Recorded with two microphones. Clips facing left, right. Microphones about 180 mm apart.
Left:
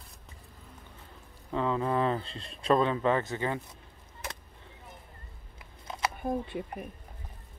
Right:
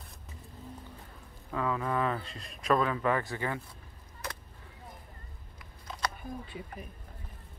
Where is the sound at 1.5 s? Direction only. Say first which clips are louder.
Left 3 dB; 25° left (ahead or behind).